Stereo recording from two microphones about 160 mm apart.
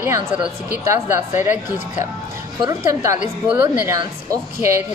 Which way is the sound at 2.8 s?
15° right (ahead or behind).